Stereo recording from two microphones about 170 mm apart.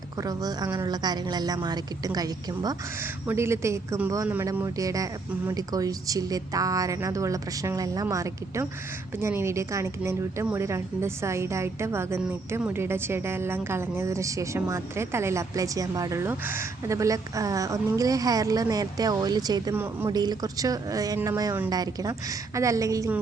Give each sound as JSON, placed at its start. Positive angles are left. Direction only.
{"t": 0.2, "sound": "a woman's voice", "side_deg": -20}
{"t": 20.1, "sound": "a woman's voice", "side_deg": -25}